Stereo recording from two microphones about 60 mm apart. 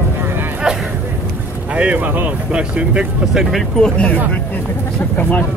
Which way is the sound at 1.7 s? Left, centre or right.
Right.